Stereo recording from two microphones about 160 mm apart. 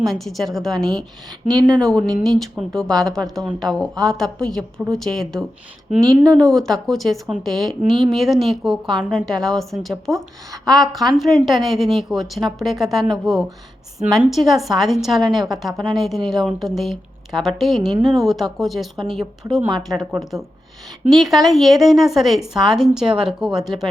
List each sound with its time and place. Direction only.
0.0 s a woman's voice: centre (ahead or behind)
1.3 s speech: 25° right (ahead or behind)
2.2 s a woman's voice: centre (ahead or behind)
6.1 s speech: 25° right (ahead or behind)
6.4 s a woman's voice: 5° left (ahead or behind)
17.8 s speech: 30° right (ahead or behind)
18.1 s a woman's voice: centre (ahead or behind)